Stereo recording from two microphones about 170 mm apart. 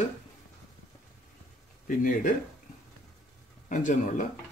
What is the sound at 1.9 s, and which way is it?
Speech, 50° left (ahead or behind).